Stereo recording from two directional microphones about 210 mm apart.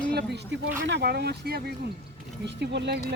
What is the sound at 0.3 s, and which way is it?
Speech, 60° right (ahead or behind).